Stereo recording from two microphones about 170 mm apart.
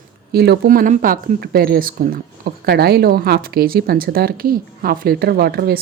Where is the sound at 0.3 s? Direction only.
70° right (ahead or behind).